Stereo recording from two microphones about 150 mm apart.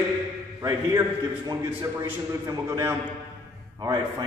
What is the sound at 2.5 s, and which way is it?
Speech, 25° right (ahead or behind).